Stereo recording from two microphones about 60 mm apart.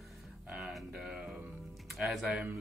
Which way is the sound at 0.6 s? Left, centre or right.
Centre.